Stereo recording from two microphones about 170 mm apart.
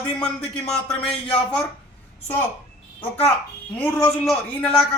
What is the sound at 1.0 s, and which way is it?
Speech, 30° left (ahead or behind).